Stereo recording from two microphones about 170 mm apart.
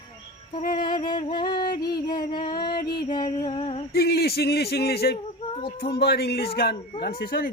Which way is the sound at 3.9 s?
65° left (ahead or behind).